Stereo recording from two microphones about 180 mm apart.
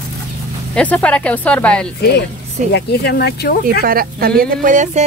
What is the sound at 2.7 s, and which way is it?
Speech, 65° left (ahead or behind).